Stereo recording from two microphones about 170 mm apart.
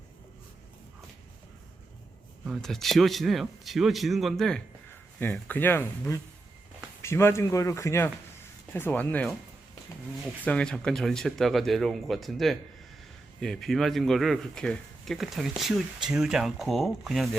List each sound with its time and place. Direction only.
2.5 s a man's voice: centre (ahead or behind)
10.4 s a man's voice: 5° left (ahead or behind)